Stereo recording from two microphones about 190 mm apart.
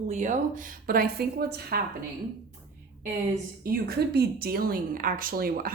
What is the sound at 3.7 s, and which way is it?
A woman's voice, 55° right (ahead or behind).